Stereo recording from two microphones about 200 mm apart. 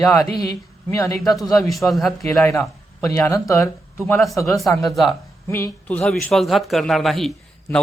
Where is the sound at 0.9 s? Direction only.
15° left (ahead or behind).